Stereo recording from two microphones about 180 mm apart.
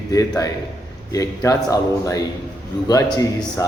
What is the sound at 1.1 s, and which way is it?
A man's voice, 20° left (ahead or behind).